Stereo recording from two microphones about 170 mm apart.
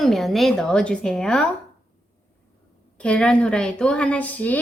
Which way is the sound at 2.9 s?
5° left (ahead or behind).